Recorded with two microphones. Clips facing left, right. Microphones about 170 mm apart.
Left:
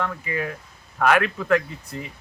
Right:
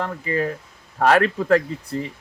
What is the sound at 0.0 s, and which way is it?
Speech, 35° right (ahead or behind).